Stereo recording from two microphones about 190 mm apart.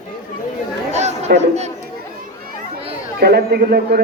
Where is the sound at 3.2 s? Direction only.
55° right (ahead or behind).